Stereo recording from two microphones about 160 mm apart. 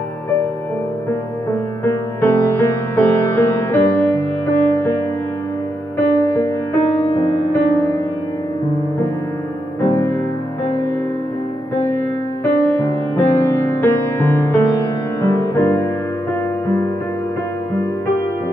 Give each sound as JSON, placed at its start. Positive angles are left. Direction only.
{"t": 1.5, "sound": "music", "side_deg": 20}
{"t": 7.2, "sound": "music", "side_deg": 0}
{"t": 7.7, "sound": "music", "side_deg": 20}
{"t": 9.8, "sound": "music", "side_deg": 20}
{"t": 12.5, "sound": "music", "side_deg": 20}